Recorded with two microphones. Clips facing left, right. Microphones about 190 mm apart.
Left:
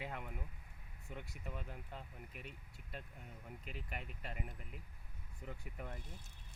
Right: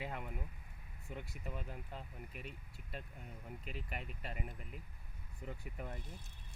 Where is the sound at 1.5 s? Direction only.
30° right (ahead or behind).